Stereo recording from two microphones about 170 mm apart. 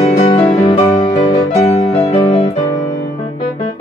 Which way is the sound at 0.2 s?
30° left (ahead or behind).